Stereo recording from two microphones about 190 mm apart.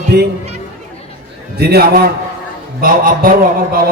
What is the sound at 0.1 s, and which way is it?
Speech, 60° right (ahead or behind).